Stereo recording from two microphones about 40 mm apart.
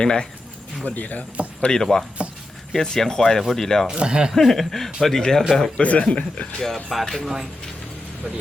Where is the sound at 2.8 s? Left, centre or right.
Centre.